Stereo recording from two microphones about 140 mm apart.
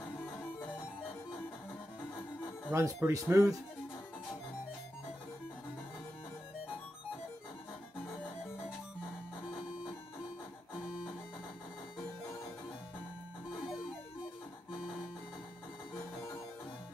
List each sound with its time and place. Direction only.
2.7 s speech: 20° right (ahead or behind)